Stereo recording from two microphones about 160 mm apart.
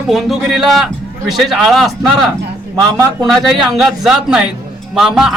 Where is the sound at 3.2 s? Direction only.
Centre (ahead or behind).